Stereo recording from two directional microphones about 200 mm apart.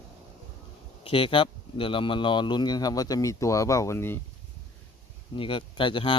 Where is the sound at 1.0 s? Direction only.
25° left (ahead or behind); by 4.2 s 10° left (ahead or behind).